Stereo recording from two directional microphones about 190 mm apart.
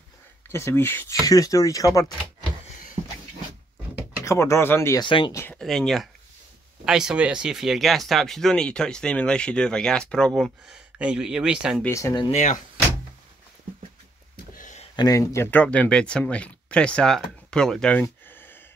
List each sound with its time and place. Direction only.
0.5 s speech: 15° left (ahead or behind)
4.2 s speech: 15° left (ahead or behind)
5.0 s speech: 25° left (ahead or behind)
5.3 s a sound: 15° left (ahead or behind)
5.6 s speech: centre (ahead or behind)
11.8 s speech: 15° left (ahead or behind)
12.3 s speech: 40° left (ahead or behind)
14.3 s a sound: 45° left (ahead or behind)
15.0 s speech: 15° left (ahead or behind)